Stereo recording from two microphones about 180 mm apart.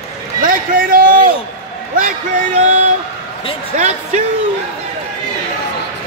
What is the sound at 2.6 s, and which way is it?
Speech, 40° right (ahead or behind).